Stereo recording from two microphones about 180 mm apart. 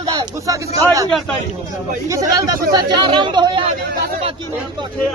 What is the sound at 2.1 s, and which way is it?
Speech, 20° right (ahead or behind).